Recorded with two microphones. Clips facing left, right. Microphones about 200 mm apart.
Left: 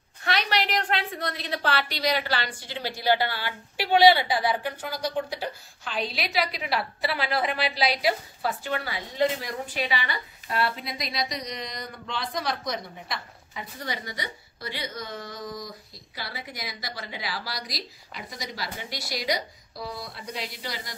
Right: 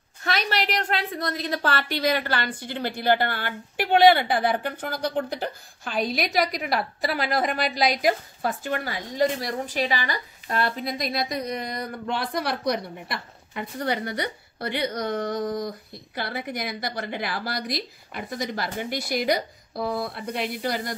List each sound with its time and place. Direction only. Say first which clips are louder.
0.2 s a woman's voice: right 1 dB; 45° right (ahead or behind)